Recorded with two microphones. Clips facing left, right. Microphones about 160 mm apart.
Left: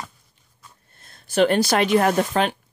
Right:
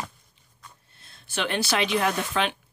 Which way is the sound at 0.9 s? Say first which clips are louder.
Left 9 dB; 45° left (ahead or behind).